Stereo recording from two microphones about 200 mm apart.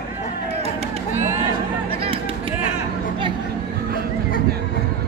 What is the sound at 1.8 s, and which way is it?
Chop, 25° right (ahead or behind).